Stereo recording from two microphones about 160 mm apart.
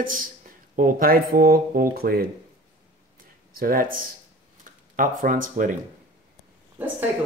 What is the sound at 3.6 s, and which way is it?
Speech, 65° right (ahead or behind).